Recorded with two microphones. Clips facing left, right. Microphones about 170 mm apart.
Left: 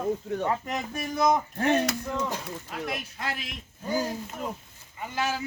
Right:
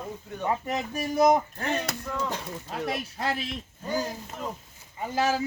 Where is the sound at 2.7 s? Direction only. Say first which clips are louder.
Right 4 dB; 35° right (ahead or behind).